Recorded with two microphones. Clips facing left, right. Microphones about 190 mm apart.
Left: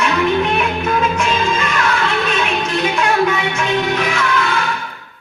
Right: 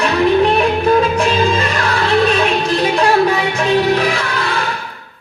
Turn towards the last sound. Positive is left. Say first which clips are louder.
# left 1 dB
turn(degrees=-35)  # may be behind; listen again after turning